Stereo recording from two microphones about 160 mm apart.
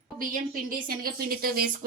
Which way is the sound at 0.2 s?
60° right (ahead or behind).